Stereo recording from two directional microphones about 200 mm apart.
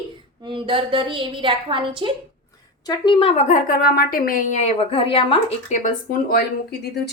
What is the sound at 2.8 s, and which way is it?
Speech, 20° left (ahead or behind).